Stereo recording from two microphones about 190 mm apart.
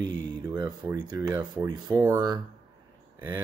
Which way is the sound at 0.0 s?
75° right (ahead or behind).